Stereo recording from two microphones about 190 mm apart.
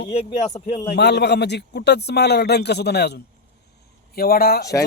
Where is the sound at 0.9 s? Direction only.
60° left (ahead or behind).